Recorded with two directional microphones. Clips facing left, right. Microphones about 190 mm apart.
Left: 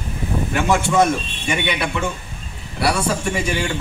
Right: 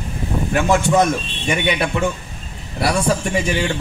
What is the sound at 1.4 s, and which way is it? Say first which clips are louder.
Speech: right 3 dB; 40° right (ahead or behind).